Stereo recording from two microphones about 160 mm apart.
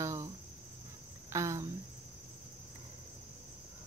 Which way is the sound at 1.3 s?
20° right (ahead or behind).